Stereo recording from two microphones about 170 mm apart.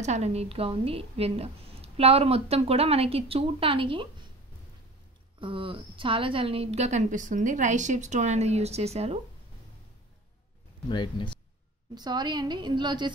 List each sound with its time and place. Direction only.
0.0 s a woman's voice: 40° right (ahead or behind)
5.4 s a woman's voice: 30° right (ahead or behind)
10.9 s speech: 30° left (ahead or behind)
11.9 s a woman's voice: 25° right (ahead or behind)